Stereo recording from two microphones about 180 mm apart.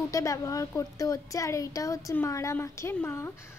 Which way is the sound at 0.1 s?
20° left (ahead or behind).